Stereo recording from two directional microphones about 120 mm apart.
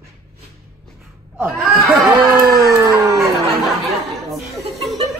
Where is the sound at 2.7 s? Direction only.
25° right (ahead or behind).